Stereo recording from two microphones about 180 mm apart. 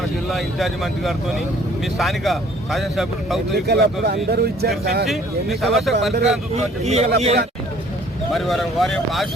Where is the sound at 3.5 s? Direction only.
65° right (ahead or behind).